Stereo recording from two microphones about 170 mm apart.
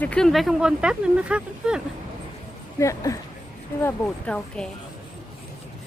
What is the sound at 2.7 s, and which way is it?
Speech, 20° left (ahead or behind).